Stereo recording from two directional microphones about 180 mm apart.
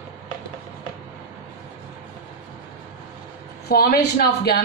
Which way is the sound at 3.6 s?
55° left (ahead or behind).